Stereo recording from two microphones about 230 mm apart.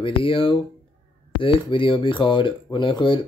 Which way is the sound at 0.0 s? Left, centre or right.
Left.